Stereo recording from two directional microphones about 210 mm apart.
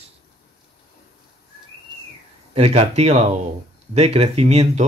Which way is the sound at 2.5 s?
30° right (ahead or behind).